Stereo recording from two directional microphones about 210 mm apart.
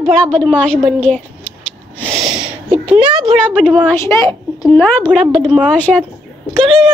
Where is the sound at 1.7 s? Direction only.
5° left (ahead or behind).